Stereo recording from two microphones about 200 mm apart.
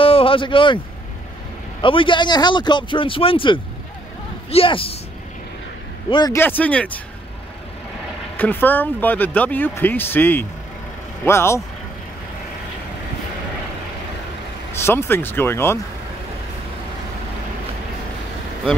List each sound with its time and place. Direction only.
0.0 s a sound: 25° left (ahead or behind)
1.8 s speech: 25° left (ahead or behind)
6.0 s speech: 20° left (ahead or behind)
6.3 s speech: 10° left (ahead or behind)
8.4 s speech: 10° left (ahead or behind)
14.7 s speech: 10° left (ahead or behind)